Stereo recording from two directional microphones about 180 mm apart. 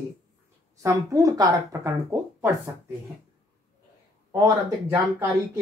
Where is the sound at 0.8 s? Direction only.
20° right (ahead or behind).